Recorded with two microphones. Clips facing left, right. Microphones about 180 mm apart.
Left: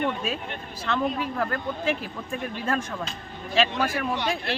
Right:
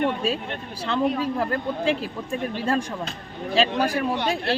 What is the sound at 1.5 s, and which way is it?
Speech, 30° right (ahead or behind).